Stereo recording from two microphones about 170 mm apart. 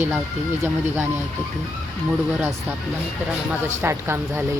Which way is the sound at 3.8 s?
15° right (ahead or behind).